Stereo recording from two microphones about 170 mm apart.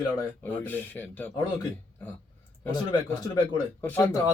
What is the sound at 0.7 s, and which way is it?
Speech, 10° left (ahead or behind).